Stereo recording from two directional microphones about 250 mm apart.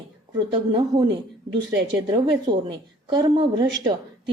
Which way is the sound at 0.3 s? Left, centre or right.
Centre.